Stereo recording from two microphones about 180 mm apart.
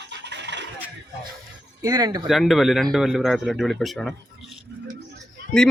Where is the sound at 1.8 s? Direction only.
20° right (ahead or behind).